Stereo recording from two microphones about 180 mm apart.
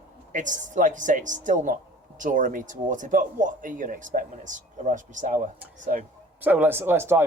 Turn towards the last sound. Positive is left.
turn(degrees=-15)  # may be behind; listen again after turning